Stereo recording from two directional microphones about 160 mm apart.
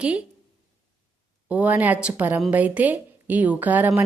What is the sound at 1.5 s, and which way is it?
A woman's voice, 10° right (ahead or behind).